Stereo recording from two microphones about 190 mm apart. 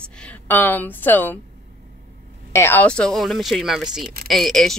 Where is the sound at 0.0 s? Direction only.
5° left (ahead or behind).